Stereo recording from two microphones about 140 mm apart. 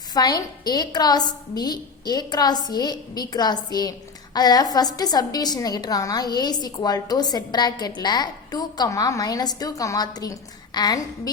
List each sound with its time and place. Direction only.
0.1 s a woman's voice: 30° left (ahead or behind)